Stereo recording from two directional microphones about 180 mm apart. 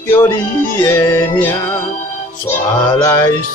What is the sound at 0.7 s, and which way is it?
Speech, 15° left (ahead or behind).